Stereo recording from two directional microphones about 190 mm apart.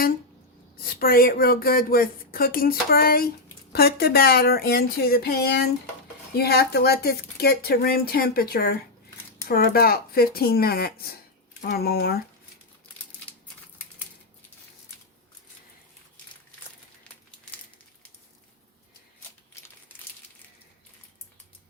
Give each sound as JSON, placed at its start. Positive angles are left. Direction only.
{"t": 0.8, "sound": "speech", "side_deg": 50}